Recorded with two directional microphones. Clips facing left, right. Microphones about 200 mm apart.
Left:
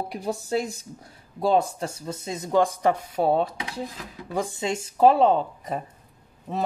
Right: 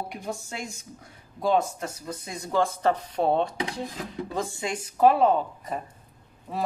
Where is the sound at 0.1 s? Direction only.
35° left (ahead or behind).